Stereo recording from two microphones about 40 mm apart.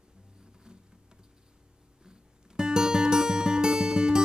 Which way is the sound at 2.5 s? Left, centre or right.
Centre.